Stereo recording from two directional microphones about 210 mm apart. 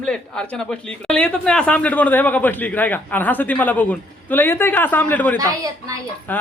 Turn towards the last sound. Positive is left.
turn(degrees=10)  # may be behind; listen again after turning